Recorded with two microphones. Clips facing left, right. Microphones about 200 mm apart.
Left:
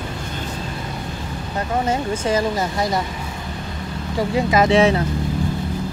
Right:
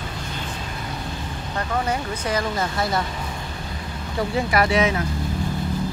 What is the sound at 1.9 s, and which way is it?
Speech, 25° left (ahead or behind).